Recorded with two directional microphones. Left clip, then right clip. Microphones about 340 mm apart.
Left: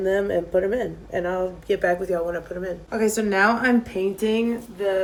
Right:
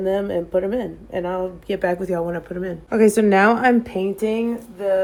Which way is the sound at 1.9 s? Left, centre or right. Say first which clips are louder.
Right 1 dB; right.